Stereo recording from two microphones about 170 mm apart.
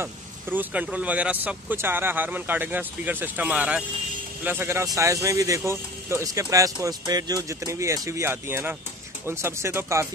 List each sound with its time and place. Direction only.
0.0 s speech: 10° right (ahead or behind)